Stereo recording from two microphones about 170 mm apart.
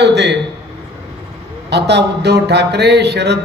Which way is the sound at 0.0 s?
80° right.